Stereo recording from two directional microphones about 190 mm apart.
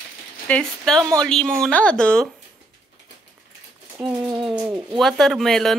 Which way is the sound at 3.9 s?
5° right (ahead or behind).